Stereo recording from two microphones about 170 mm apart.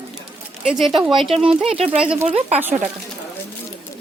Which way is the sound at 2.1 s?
5° right (ahead or behind).